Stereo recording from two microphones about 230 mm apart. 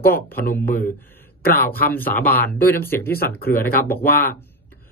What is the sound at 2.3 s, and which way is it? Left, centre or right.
Speech, left.